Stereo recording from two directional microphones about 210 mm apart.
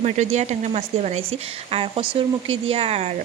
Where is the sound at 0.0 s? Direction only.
35° right (ahead or behind).